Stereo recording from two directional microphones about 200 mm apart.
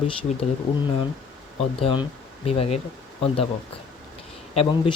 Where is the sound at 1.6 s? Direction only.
30° left (ahead or behind).